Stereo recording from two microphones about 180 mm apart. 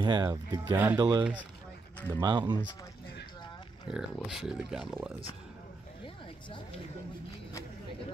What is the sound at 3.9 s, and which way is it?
Speech, 5° right (ahead or behind).